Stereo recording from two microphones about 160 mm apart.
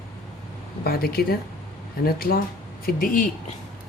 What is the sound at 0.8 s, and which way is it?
Speech, 75° left (ahead or behind).